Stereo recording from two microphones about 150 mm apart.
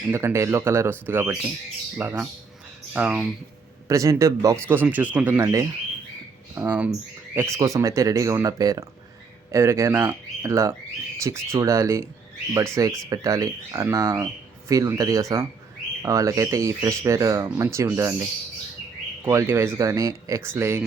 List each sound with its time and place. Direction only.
0.1 s speech: 20° right (ahead or behind)
3.8 s speech: 20° right (ahead or behind)
5.4 s speech: 20° right (ahead or behind)